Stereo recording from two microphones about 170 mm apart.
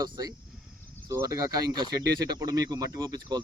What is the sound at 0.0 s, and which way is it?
Speech, 20° right (ahead or behind).